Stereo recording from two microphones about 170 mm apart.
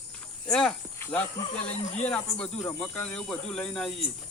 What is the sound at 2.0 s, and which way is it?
Speech, 5° left (ahead or behind).